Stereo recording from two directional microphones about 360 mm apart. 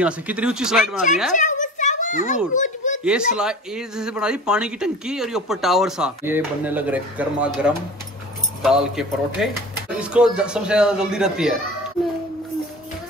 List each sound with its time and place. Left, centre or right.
0.0 s speech: centre
1.3 s a sound: left
3.0 s speech: centre